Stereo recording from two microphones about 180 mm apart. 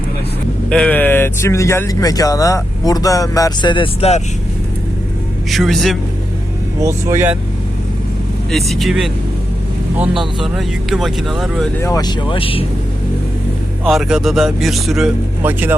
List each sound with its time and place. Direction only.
0.7 s speech: 5° left (ahead or behind); by 4.2 s 30° left (ahead or behind)
5.5 s speech: centre (ahead or behind)
6.7 s speech: 15° right (ahead or behind)
8.4 s speech: centre (ahead or behind)
11.8 s speech: 20° left (ahead or behind)
13.8 s speech: centre (ahead or behind)